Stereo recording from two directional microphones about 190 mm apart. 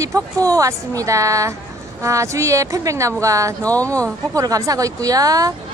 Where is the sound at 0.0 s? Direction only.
15° right (ahead or behind).